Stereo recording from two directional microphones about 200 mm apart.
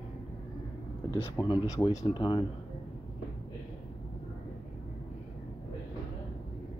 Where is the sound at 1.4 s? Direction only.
15° left (ahead or behind).